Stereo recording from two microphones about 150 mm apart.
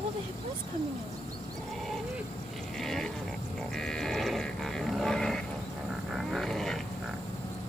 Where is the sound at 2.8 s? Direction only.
Centre (ahead or behind).